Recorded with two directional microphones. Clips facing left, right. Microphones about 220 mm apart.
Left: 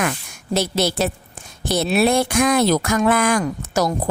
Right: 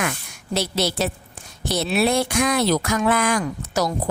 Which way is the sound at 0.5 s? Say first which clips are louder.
Left 3 dB; 50° left (ahead or behind).